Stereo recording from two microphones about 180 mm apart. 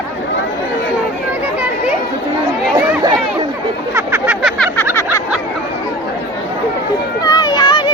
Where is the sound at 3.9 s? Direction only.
10° right (ahead or behind).